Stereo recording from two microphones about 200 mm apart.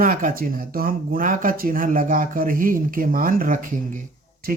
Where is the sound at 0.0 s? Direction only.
45° right (ahead or behind).